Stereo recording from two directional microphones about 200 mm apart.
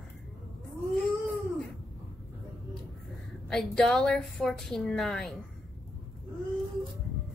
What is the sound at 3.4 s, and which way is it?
A woman's voice, 5° left (ahead or behind).